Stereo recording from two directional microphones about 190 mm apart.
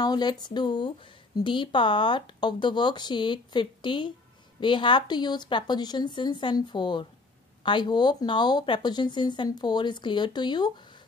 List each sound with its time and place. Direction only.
0.0 s speech: 20° left (ahead or behind)